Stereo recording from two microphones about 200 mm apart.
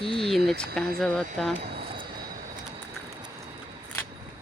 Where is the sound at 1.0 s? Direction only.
5° left (ahead or behind).